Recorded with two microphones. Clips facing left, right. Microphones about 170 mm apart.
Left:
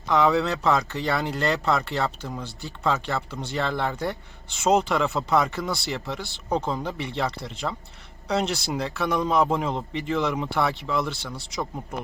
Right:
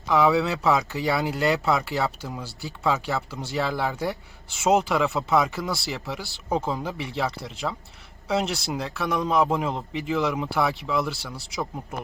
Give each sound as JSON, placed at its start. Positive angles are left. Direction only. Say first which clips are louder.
{"t": 0.1, "sound": "speech", "louder": "even", "side_deg": 0}